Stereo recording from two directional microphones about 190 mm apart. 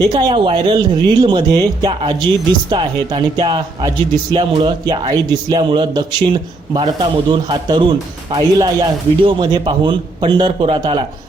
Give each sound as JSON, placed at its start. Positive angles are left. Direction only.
{"t": 0.1, "sound": "a man's voice", "side_deg": -25}